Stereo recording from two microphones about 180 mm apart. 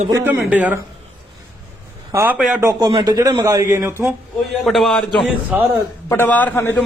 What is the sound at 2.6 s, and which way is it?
A man's voice, 25° right (ahead or behind).